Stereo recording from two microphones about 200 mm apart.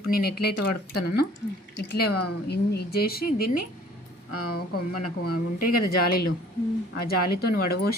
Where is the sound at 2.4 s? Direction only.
55° left (ahead or behind).